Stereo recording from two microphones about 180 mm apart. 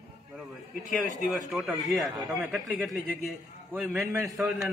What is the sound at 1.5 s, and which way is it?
A man's voice, centre (ahead or behind).